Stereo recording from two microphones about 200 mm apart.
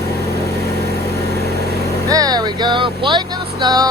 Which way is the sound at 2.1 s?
20° right (ahead or behind).